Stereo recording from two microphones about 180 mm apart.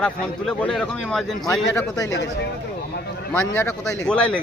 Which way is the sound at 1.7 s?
20° left (ahead or behind).